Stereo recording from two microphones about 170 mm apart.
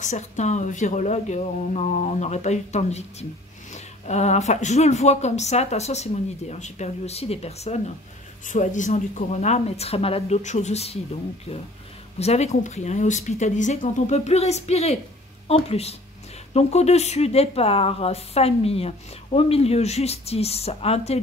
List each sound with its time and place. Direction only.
0.0 s speech: 45° left (ahead or behind)
12.2 s speech: 40° left (ahead or behind)